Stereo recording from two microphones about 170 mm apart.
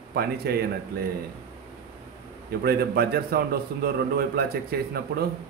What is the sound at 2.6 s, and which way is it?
A man's voice, 65° right (ahead or behind).